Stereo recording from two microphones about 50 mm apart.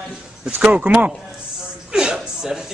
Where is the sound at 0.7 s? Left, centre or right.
Right.